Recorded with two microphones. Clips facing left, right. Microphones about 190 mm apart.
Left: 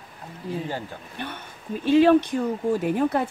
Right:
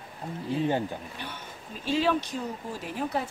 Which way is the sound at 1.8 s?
55° left (ahead or behind).